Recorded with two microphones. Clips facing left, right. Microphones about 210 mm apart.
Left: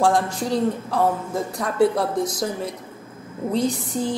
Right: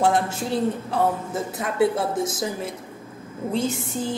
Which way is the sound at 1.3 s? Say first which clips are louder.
Left 2 dB; 5° right (ahead or behind).